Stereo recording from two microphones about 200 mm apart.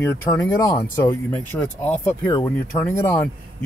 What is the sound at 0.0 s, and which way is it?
Speech, 15° left (ahead or behind).